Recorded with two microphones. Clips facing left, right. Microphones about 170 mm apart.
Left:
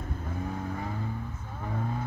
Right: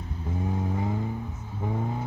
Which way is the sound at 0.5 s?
20° right (ahead or behind).